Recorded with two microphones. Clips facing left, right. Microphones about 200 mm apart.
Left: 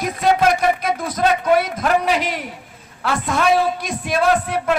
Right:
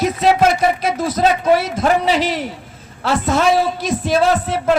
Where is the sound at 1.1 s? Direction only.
25° right (ahead or behind).